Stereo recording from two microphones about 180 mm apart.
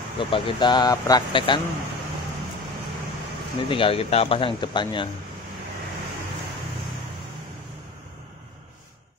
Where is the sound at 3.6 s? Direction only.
30° left (ahead or behind).